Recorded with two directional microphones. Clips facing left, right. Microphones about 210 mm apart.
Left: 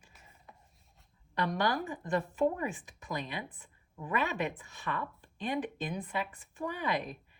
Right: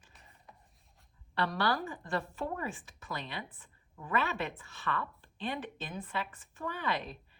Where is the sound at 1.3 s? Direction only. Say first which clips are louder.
Left 1 dB; 15° left (ahead or behind).